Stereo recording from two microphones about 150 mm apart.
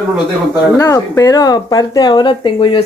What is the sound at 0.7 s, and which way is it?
Speech, 20° left (ahead or behind).